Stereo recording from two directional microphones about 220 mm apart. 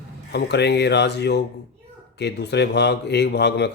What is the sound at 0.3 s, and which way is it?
Speech, 50° left (ahead or behind).